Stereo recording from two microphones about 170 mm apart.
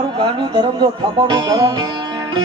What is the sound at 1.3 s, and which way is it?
Music, 25° right (ahead or behind).